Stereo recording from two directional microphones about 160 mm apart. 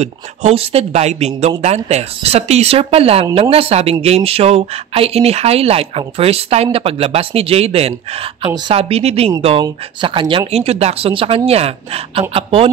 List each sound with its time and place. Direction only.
0.0 s speech: 45° right (ahead or behind)